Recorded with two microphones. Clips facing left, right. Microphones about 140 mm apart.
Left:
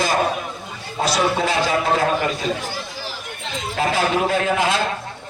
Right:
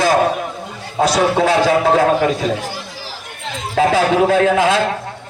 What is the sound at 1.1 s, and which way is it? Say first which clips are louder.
A man's voice: right 4 dB; 65° right (ahead or behind).